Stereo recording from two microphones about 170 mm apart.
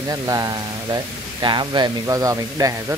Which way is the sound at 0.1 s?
20° right (ahead or behind).